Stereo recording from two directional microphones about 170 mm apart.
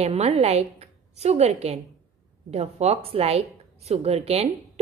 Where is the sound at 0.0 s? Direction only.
40° right (ahead or behind).